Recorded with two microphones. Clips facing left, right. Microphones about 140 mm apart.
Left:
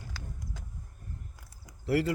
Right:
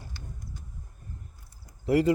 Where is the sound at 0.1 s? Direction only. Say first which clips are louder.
Left 2 dB; 90° left.